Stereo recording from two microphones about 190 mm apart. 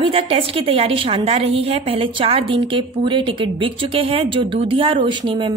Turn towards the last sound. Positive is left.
turn(degrees=-25)  # may be behind; listen again after turning